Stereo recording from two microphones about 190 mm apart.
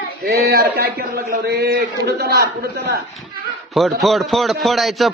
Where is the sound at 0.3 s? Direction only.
55° right (ahead or behind).